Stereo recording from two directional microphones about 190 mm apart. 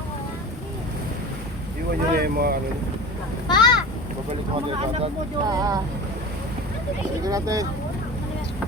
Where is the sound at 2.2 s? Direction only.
55° right (ahead or behind).